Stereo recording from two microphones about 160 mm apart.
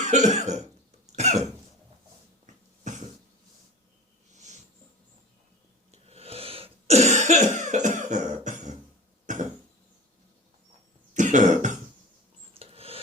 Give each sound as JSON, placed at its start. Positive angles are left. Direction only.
{"t": 0.0, "sound": "cough", "side_deg": -45}
{"t": 2.8, "sound": "cough", "side_deg": -45}
{"t": 4.4, "sound": "a sound", "side_deg": -45}
{"t": 5.9, "sound": "cough", "side_deg": -40}
{"t": 11.1, "sound": "cough", "side_deg": -50}
{"t": 12.5, "sound": "a sound", "side_deg": -35}